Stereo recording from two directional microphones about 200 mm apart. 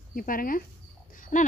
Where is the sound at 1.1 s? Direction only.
40° left (ahead or behind).